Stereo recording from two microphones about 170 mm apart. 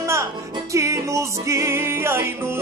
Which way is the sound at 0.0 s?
15° right (ahead or behind).